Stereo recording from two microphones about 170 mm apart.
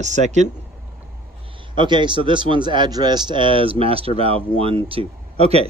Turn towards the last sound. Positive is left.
turn(degrees=-35)  # may be behind; listen again after turning